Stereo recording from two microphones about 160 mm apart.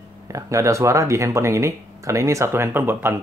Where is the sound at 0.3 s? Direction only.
20° right (ahead or behind).